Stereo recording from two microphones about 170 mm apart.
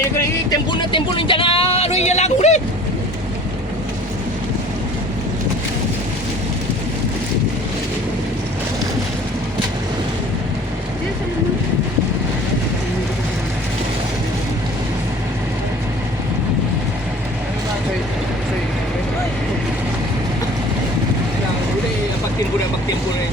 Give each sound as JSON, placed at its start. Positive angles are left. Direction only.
{"t": 0.7, "sound": "speech", "side_deg": 30}